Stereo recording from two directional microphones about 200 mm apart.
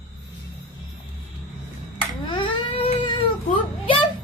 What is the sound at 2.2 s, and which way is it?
Baby cry, 25° left (ahead or behind).